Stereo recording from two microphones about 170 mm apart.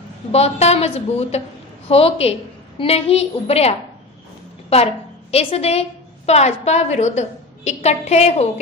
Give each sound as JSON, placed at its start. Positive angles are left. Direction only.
{"t": 0.3, "sound": "a woman's voice", "side_deg": 40}